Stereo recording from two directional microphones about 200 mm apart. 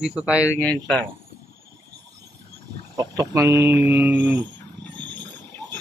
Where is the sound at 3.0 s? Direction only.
15° right (ahead or behind).